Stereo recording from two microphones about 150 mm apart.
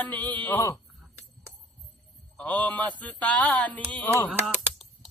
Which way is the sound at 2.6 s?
10° left (ahead or behind).